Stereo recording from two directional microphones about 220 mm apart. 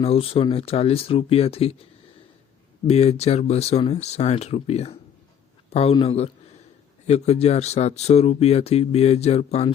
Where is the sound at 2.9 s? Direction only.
30° left (ahead or behind).